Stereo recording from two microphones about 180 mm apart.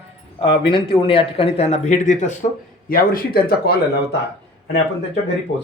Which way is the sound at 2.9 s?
55° left (ahead or behind).